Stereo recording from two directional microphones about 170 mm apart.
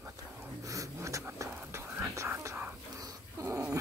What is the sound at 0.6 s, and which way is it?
Whispering, 20° right (ahead or behind).